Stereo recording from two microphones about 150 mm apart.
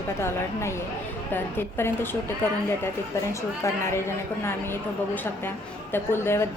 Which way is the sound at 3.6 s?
20° left (ahead or behind).